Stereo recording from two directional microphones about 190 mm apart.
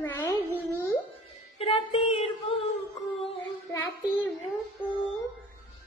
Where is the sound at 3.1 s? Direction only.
25° left (ahead or behind).